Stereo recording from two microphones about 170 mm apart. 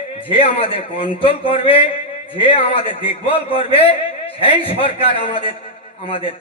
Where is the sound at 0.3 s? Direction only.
35° left (ahead or behind).